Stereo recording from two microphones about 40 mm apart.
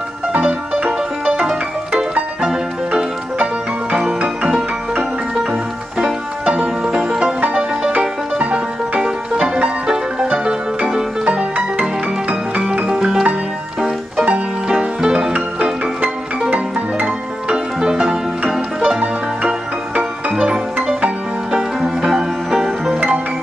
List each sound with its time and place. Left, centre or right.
2.4 s music: right
6.4 s music: right
6.9 s music: centre
8.0 s music: right
11.2 s music: right
12.8 s music: centre
16.0 s music: right
17.7 s music: right
18.5 s music: centre
20.0 s music: right; by 22.9 s centre